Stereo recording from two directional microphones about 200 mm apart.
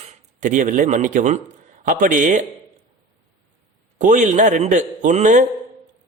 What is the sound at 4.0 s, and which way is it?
A man's voice, 40° right (ahead or behind).